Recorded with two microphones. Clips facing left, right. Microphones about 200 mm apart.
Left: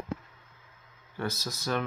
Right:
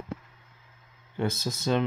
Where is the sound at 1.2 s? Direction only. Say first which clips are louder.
Right 5 dB; 25° right (ahead or behind).